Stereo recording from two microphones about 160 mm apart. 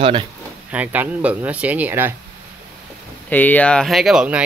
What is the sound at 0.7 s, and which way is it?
Speech, 10° right (ahead or behind).